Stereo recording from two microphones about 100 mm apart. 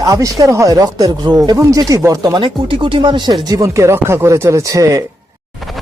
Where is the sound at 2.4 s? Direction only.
55° right (ahead or behind); by 5.0 s 35° right (ahead or behind).